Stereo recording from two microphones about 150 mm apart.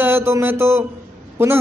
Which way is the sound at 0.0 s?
15° right (ahead or behind).